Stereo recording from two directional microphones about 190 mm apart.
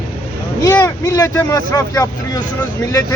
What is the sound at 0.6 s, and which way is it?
Speech, 10° left (ahead or behind).